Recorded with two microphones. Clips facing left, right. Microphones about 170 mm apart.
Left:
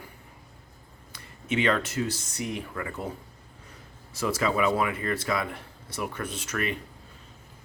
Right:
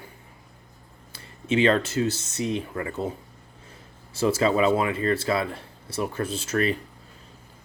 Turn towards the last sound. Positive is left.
turn(degrees=-30)  # may be behind; listen again after turning